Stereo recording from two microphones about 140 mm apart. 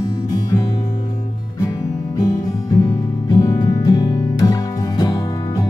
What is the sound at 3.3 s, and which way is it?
Music, 25° left (ahead or behind).